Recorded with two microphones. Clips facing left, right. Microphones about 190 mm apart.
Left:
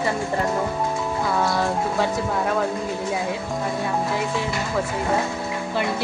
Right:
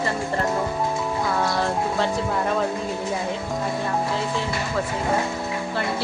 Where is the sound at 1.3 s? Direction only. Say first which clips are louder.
Left 2 dB; 10° left (ahead or behind).